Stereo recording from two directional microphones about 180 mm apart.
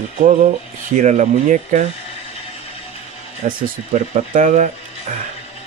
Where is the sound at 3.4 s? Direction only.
45° right (ahead or behind).